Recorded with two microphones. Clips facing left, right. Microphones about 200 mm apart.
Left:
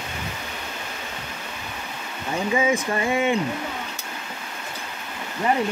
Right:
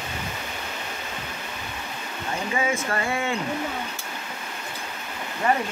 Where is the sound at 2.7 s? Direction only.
20° left (ahead or behind).